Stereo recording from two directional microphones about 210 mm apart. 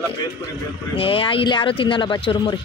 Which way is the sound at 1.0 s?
25° left (ahead or behind).